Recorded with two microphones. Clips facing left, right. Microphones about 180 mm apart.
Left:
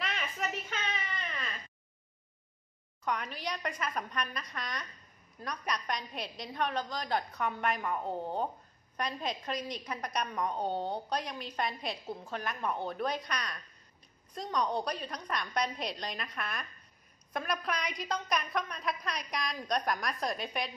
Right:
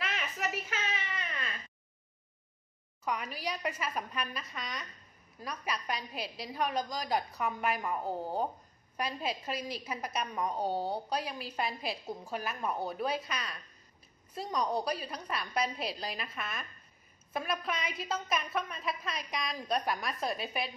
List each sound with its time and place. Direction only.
0.0 s baby cry: centre (ahead or behind)
3.1 s a woman's voice: 5° right (ahead or behind)